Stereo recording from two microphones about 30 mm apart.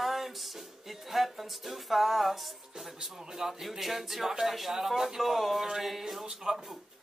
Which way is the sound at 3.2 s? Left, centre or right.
Centre.